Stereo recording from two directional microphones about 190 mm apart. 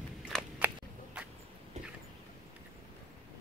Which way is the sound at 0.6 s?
10° right (ahead or behind).